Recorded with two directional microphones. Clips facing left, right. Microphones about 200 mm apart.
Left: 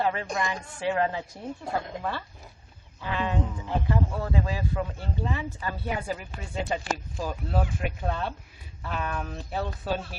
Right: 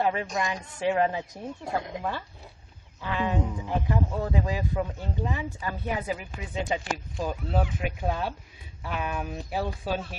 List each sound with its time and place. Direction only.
0.0 s a man's voice: 15° right (ahead or behind)